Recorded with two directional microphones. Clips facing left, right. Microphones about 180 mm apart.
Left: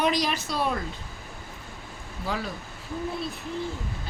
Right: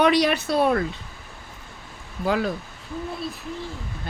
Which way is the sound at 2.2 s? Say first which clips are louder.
Right 8 dB; 55° right (ahead or behind).